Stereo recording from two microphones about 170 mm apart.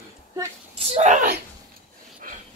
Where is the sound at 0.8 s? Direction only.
40° right (ahead or behind).